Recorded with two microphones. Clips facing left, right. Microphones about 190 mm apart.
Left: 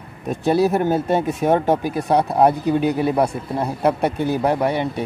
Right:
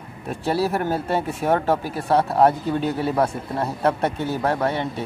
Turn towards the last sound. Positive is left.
turn(degrees=15)  # may be behind; listen again after turning